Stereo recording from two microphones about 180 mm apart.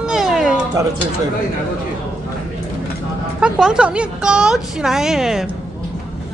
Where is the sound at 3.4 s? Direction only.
5° right (ahead or behind).